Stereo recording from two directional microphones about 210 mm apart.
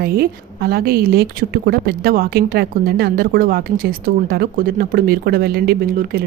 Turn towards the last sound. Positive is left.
turn(degrees=-45)  # may be behind; listen again after turning